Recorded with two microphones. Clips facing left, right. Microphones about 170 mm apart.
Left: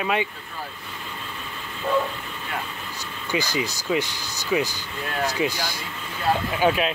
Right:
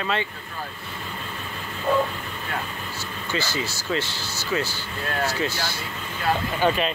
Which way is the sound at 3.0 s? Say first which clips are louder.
Left 2 dB; 15° left (ahead or behind).